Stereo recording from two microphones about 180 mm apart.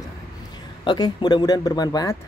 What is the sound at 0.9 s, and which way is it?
Speech, 25° left (ahead or behind).